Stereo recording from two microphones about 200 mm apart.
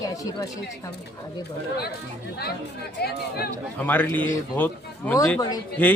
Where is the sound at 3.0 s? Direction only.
55° left (ahead or behind).